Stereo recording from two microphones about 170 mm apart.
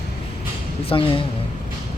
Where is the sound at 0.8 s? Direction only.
30° left (ahead or behind).